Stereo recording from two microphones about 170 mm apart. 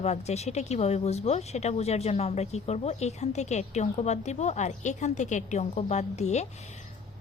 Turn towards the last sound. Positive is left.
turn(degrees=40)  # may be behind; listen again after turning